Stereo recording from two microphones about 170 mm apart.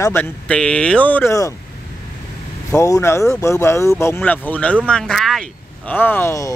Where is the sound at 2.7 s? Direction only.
20° left (ahead or behind).